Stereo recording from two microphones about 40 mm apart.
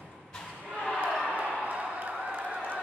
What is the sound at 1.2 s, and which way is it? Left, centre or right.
Basketball bounce, right.